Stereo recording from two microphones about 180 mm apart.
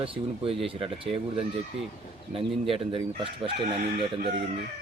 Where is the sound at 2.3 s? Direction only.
30° right (ahead or behind).